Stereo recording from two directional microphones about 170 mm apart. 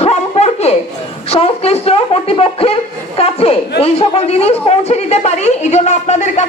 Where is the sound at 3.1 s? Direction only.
35° left (ahead or behind).